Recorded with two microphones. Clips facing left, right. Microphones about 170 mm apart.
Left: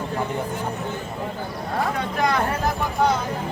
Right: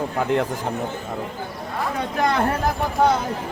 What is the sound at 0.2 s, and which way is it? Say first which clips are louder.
Speech: right 7 dB; 90° right.